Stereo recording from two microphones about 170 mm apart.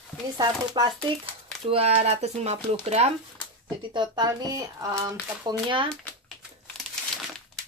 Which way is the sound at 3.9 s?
25° right (ahead or behind).